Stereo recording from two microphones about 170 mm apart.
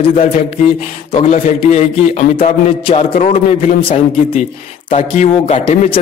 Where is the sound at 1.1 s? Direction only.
40° left (ahead or behind).